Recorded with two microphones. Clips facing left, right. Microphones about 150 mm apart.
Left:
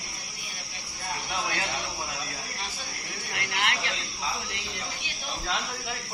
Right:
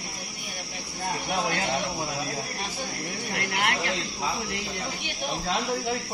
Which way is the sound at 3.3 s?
45° right (ahead or behind).